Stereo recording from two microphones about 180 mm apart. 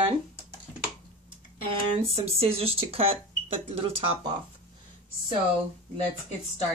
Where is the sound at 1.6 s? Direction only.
30° right (ahead or behind).